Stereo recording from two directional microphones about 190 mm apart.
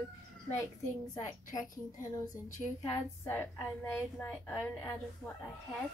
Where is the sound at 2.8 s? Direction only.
10° left (ahead or behind).